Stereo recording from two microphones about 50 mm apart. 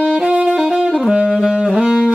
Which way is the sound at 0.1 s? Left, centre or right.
Right.